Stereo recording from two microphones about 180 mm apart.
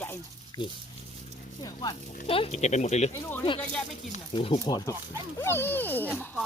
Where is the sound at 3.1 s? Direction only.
10° left (ahead or behind).